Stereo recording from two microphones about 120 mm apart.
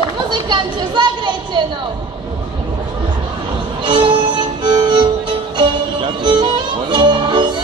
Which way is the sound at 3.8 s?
45° right (ahead or behind).